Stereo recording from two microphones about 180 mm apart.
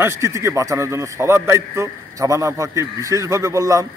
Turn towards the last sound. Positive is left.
turn(degrees=-20)  # may be behind; listen again after turning